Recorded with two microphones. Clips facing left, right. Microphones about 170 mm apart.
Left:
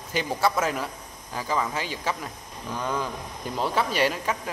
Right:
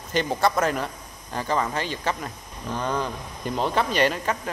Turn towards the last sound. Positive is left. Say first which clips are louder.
# right 2 dB
turn(degrees=5)  # may be behind; listen again after turning